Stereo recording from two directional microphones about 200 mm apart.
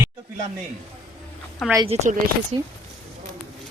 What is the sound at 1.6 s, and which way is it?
Speech, centre (ahead or behind).